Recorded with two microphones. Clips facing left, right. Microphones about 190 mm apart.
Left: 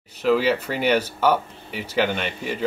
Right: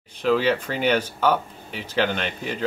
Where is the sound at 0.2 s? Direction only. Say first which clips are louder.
Left 1 dB; 5° left (ahead or behind).